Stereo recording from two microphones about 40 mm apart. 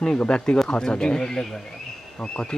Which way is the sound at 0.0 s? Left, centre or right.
Left.